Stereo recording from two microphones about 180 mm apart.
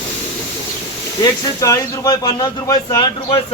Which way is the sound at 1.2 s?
20° left (ahead or behind).